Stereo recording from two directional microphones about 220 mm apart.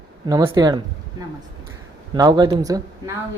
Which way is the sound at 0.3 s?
15° right (ahead or behind).